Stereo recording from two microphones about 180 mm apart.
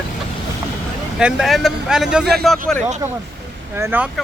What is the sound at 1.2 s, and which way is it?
Speech, centre (ahead or behind).